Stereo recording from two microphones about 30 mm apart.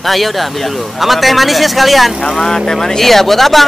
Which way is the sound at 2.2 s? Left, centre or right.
Centre.